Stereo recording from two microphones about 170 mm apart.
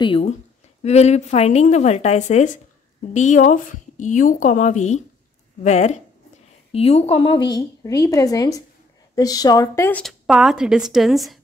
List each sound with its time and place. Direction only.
0.0 s a woman's voice: 30° left (ahead or behind)
9.8 s a woman's voice: 5° left (ahead or behind)